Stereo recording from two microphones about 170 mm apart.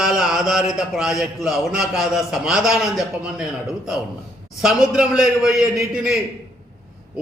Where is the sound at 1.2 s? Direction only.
Centre (ahead or behind).